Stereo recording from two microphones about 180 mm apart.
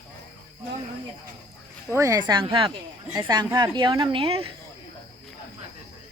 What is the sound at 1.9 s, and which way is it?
A woman's voice, 15° right (ahead or behind).